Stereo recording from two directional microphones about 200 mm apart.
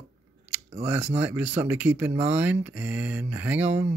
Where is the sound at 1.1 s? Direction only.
10° right (ahead or behind).